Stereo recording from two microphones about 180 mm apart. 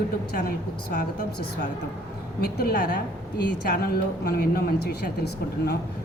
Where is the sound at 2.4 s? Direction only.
60° left (ahead or behind).